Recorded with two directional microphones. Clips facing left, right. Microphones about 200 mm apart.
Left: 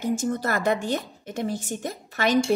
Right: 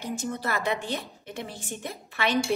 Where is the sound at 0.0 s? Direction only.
45° left (ahead or behind).